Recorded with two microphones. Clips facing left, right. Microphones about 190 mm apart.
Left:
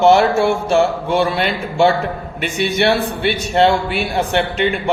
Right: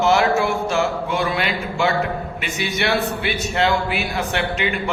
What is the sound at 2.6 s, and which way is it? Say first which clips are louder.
A man's voice: left 6 dB; 30° left (ahead or behind).